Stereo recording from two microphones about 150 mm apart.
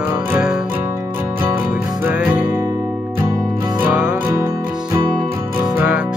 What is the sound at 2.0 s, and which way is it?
Music, 5° right (ahead or behind).